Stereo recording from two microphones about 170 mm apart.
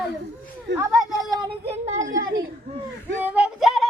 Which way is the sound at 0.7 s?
90° right.